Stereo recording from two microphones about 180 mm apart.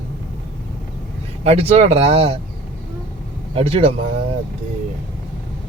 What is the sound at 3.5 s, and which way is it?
Speech, 30° right (ahead or behind).